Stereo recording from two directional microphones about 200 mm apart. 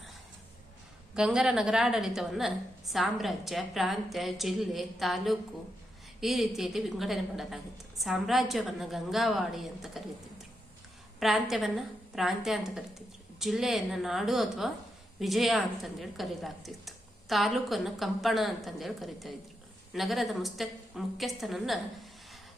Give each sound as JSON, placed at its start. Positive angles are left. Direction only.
{"t": 1.1, "sound": "a woman's voice", "side_deg": -5}